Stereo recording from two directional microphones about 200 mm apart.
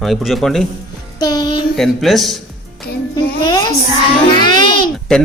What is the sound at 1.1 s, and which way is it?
Music, 20° left (ahead or behind).